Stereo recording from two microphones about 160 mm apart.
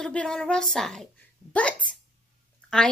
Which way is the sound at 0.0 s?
5° left (ahead or behind).